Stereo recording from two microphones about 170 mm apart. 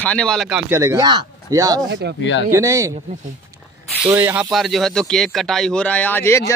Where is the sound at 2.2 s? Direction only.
90° left.